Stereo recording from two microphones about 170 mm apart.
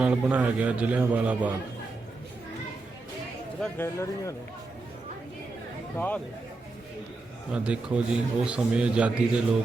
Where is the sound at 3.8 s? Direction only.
15° left (ahead or behind).